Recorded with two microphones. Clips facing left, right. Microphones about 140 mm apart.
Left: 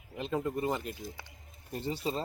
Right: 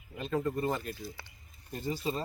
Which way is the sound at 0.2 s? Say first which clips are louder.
Right 1 dB; 20° left (ahead or behind).